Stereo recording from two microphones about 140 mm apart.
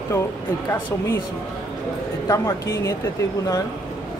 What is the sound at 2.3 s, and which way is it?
Speech, 20° left (ahead or behind).